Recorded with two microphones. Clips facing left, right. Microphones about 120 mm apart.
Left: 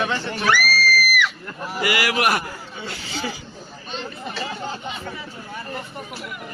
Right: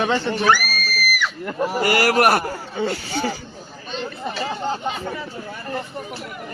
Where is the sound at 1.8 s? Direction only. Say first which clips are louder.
Right 4 dB; 40° right (ahead or behind).